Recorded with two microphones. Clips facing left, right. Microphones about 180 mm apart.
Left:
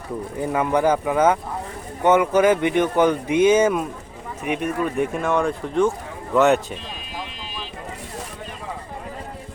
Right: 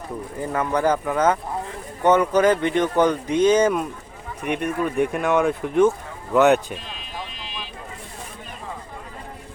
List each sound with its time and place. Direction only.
0.3 s speech: 15° left (ahead or behind); by 5.9 s 10° right (ahead or behind)
6.3 s speech: centre (ahead or behind)